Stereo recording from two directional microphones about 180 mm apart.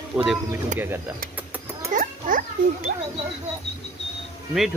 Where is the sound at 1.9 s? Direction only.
50° right (ahead or behind).